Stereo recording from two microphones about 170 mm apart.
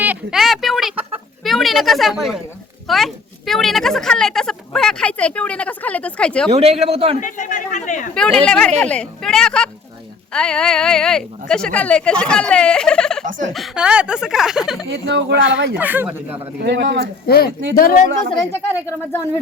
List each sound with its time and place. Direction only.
0.0 s a sound: 5° right (ahead or behind)
1.5 s a woman's voice: centre (ahead or behind)
6.5 s a man's voice: 40° right (ahead or behind)
7.2 s speech: 50° left (ahead or behind)
8.1 s a woman's voice: 5° left (ahead or behind)
14.8 s speech: 80° right
15.8 s speech: 10° right (ahead or behind)
16.6 s speech: 90° right
17.2 s speech: 65° left (ahead or behind)
18.5 s speech: 15° left (ahead or behind)